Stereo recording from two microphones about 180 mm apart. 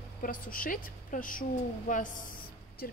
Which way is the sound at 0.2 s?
50° left (ahead or behind).